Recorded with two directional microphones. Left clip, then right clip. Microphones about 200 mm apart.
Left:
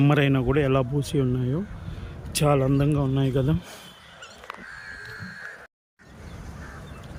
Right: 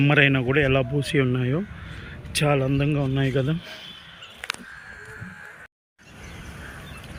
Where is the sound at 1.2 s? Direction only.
30° right (ahead or behind).